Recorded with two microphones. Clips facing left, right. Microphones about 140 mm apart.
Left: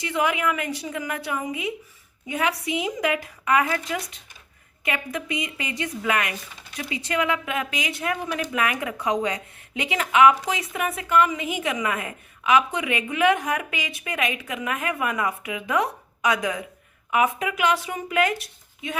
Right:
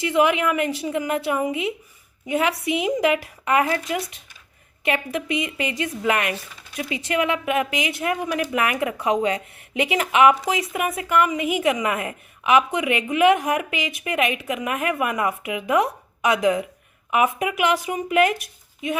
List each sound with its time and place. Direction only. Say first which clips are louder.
0.0 s speech: right 5 dB; 20° right (ahead or behind)
4.9 s speech: right 4 dB; 25° right (ahead or behind)